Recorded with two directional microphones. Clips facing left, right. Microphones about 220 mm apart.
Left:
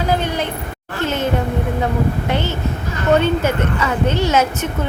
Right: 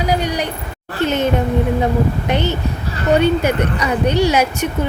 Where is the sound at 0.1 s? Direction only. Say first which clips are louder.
Even; 15° right (ahead or behind).